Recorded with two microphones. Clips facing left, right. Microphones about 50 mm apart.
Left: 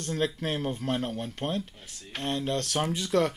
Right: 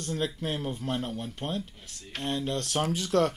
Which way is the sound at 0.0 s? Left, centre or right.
Left.